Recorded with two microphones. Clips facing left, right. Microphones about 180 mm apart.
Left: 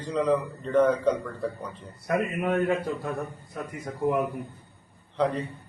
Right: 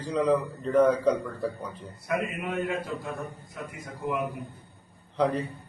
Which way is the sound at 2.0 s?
55° left (ahead or behind).